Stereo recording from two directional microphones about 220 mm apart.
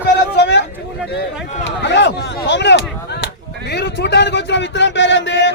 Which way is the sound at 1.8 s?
50° left (ahead or behind).